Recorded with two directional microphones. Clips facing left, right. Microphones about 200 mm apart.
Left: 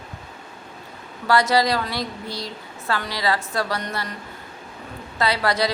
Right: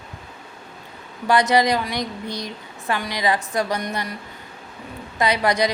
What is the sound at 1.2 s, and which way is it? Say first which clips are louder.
A woman's voice: right 1 dB; 20° right (ahead or behind).